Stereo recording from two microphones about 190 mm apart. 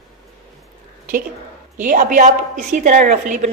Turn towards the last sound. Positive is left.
turn(degrees=-40)  # may be behind; listen again after turning